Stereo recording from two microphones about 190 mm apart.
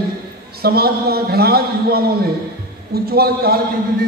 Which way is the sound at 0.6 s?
55° right (ahead or behind).